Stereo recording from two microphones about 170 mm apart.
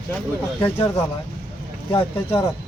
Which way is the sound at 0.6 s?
15° left (ahead or behind).